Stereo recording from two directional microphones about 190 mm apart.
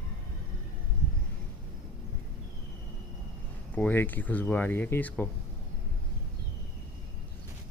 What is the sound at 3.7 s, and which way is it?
Speech, 10° left (ahead or behind).